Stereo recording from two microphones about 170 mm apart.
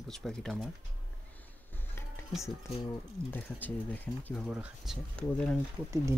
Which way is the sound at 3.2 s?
10° left (ahead or behind).